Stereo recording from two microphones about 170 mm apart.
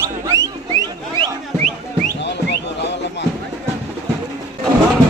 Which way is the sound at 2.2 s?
90° left.